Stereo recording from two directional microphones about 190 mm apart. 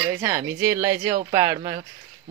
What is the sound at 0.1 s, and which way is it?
Speech, 10° right (ahead or behind).